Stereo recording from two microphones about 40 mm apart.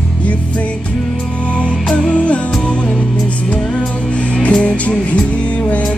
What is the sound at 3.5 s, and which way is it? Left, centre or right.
Music, left.